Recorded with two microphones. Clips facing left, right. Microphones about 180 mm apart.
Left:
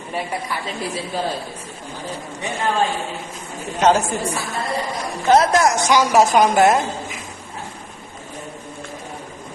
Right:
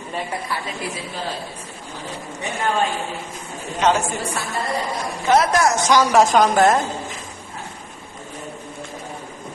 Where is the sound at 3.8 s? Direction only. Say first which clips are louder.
Left 3 dB; 35° left (ahead or behind).